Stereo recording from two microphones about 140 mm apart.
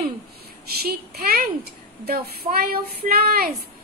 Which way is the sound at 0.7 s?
90° right.